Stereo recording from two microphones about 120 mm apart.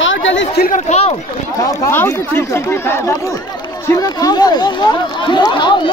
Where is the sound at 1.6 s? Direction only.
20° left (ahead or behind).